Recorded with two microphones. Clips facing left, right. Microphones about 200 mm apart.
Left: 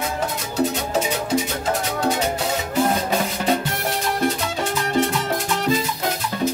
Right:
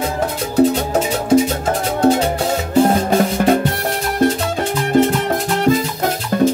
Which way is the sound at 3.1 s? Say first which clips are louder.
Right 7 dB; 50° right (ahead or behind).